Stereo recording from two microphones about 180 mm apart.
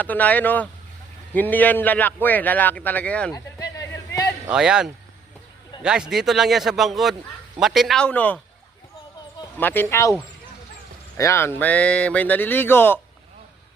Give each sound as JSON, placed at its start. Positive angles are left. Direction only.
{"t": 0.0, "sound": "speech", "side_deg": 10}
{"t": 3.3, "sound": "a sound", "side_deg": 20}
{"t": 4.4, "sound": "a man's voice", "side_deg": -5}
{"t": 9.6, "sound": "speech", "side_deg": 10}
{"t": 11.2, "sound": "speech", "side_deg": 15}